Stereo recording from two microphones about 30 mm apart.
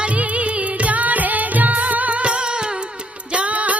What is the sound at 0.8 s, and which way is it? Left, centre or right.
Music, right.